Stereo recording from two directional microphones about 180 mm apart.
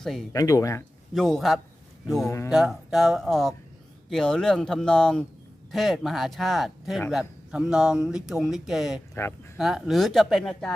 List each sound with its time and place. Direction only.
0.0 s speech: centre (ahead or behind)
0.3 s speech: 20° left (ahead or behind)
1.1 s speech: centre (ahead or behind)
9.2 s speech: 15° left (ahead or behind)
9.6 s speech: centre (ahead or behind)